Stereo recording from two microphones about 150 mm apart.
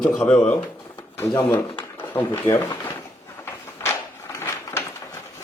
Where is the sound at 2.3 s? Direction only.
15° left (ahead or behind).